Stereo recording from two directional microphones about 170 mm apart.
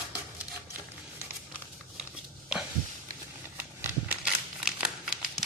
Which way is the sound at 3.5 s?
10° right (ahead or behind).